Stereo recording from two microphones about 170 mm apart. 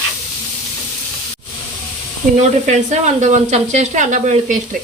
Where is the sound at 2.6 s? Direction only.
45° right (ahead or behind).